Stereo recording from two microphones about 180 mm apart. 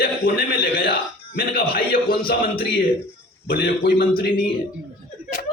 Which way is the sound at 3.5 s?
65° left (ahead or behind).